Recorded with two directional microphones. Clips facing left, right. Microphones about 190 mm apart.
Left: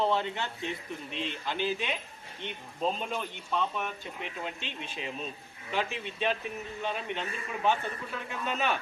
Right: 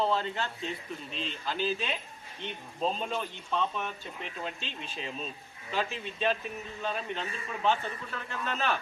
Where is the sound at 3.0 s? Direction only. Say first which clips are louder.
Right 1 dB; 10° left (ahead or behind).